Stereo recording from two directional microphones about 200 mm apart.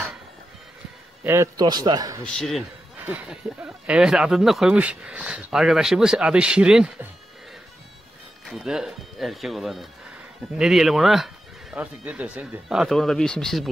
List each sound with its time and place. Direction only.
1.2 s a man's voice: 15° right (ahead or behind)
2.2 s speech: 5° left (ahead or behind)
8.5 s speech: centre (ahead or behind)